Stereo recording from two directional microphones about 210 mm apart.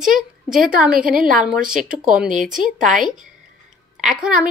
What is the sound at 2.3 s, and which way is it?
Speech, 40° right (ahead or behind).